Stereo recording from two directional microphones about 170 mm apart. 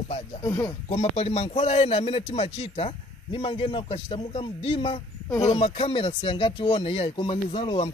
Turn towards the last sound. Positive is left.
turn(degrees=30)  # may be behind; listen again after turning